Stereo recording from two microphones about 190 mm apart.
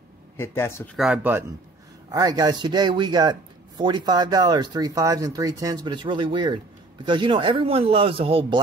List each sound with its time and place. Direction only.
0.4 s speech: 15° left (ahead or behind)
0.9 s speech: 5° right (ahead or behind)
2.0 s a man's voice: 20° right (ahead or behind)